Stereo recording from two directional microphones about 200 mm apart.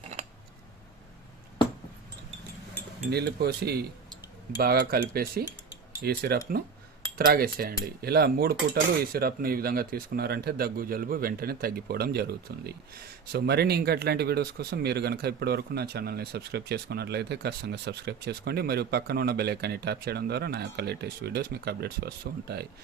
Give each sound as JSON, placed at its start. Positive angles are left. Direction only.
{"t": 3.1, "sound": "speech", "side_deg": -55}